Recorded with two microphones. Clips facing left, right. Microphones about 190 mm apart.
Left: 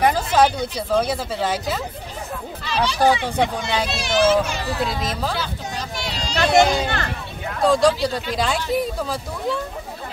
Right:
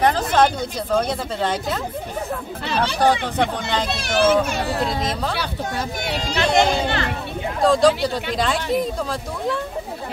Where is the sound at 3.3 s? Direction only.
10° left (ahead or behind).